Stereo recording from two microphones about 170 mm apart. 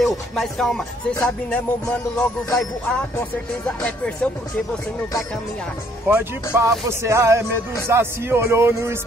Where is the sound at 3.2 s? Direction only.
5° left (ahead or behind).